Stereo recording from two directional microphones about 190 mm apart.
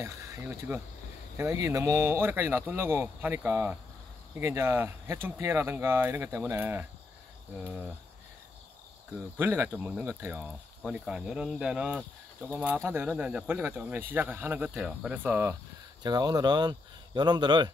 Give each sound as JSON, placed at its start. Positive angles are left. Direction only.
{"t": 0.0, "sound": "speech", "side_deg": -15}
{"t": 9.4, "sound": "speech", "side_deg": -15}